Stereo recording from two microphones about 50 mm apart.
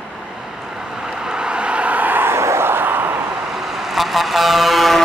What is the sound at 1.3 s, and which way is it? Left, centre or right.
Vehicle, centre.